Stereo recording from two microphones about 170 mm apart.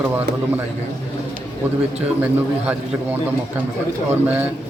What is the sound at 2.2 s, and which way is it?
A man's voice, 10° right (ahead or behind).